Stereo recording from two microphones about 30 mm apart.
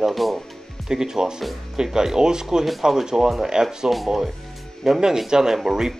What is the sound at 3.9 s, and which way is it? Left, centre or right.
Speech, right.